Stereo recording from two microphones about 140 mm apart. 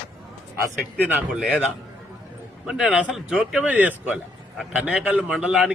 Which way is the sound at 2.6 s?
5° right (ahead or behind).